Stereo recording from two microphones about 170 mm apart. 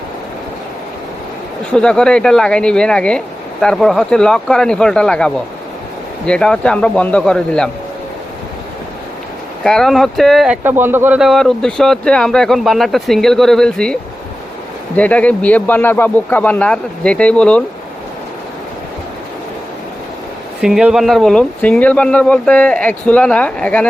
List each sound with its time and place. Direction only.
1.7 s speech: 5° left (ahead or behind)
9.6 s speech: 5° left (ahead or behind)
20.6 s speech: 5° right (ahead or behind)